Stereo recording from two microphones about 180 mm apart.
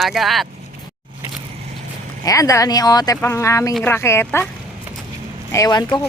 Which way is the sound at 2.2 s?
20° left (ahead or behind).